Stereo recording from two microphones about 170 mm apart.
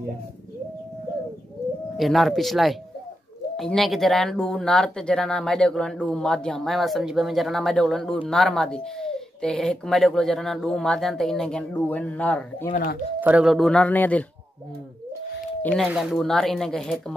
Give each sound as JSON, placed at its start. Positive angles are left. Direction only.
{"t": 2.0, "sound": "speech", "side_deg": 0}
{"t": 12.7, "sound": "speech", "side_deg": 60}
{"t": 13.2, "sound": "speech", "side_deg": -5}
{"t": 15.6, "sound": "speech", "side_deg": 5}